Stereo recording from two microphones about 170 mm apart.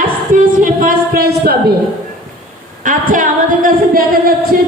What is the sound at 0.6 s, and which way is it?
Music, 55° right (ahead or behind).